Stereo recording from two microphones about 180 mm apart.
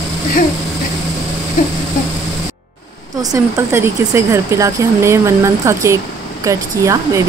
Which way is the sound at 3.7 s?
15° right (ahead or behind).